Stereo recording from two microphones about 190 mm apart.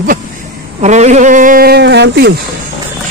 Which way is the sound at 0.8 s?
40° right (ahead or behind).